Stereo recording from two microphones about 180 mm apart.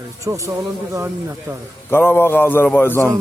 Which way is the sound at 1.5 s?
15° right (ahead or behind).